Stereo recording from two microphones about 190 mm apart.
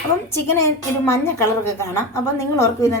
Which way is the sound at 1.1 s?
15° left (ahead or behind).